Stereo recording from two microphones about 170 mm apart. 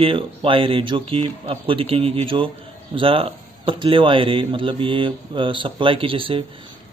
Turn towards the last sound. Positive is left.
turn(degrees=-30)  # may be behind; listen again after turning